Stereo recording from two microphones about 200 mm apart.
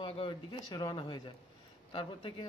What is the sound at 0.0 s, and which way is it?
A man's voice, 25° left (ahead or behind).